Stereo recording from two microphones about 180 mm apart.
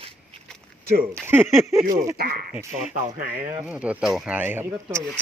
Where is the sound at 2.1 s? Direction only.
55° right (ahead or behind).